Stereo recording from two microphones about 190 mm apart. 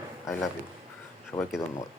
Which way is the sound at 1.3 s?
20° left (ahead or behind).